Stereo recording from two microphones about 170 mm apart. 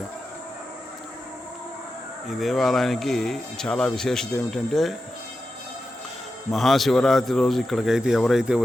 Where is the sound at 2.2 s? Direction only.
Centre (ahead or behind).